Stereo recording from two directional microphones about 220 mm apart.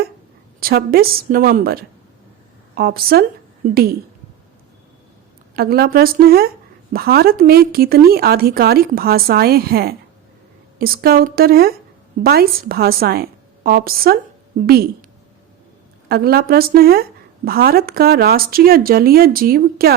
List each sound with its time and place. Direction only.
0.6 s a woman's voice: 45° right (ahead or behind)
5.5 s a woman's voice: 45° right (ahead or behind)
16.0 s a woman's voice: 45° right (ahead or behind)